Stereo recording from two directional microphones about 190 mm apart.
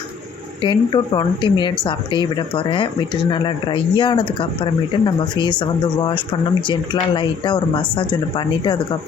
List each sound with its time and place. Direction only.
0.6 s speech: 25° left (ahead or behind)